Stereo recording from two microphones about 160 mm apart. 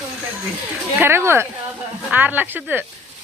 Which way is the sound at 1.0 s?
15° right (ahead or behind).